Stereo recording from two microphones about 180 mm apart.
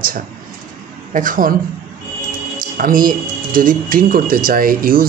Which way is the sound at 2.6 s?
50° right (ahead or behind).